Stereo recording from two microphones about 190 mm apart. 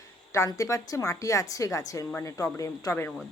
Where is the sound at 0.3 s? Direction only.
15° left (ahead or behind).